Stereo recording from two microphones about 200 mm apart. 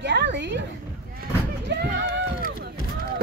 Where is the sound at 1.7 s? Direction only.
60° right (ahead or behind).